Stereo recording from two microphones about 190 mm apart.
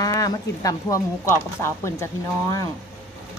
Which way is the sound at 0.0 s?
20° left (ahead or behind).